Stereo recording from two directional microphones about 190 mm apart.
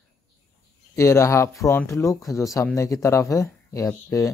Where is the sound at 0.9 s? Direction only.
15° left (ahead or behind).